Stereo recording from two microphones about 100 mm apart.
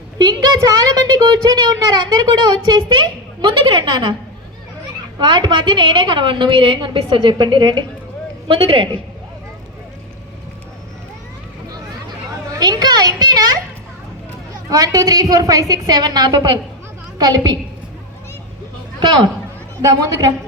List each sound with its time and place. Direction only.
0.2 s a woman's voice: 45° right (ahead or behind)
5.2 s a woman's voice: 50° right (ahead or behind)
12.5 s a woman's voice: 40° right (ahead or behind)
14.7 s a woman's voice: 35° right (ahead or behind)
19.8 s a woman's voice: 35° right (ahead or behind)